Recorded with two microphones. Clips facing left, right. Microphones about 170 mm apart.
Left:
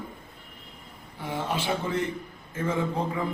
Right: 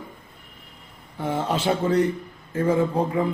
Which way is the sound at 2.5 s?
35° right (ahead or behind).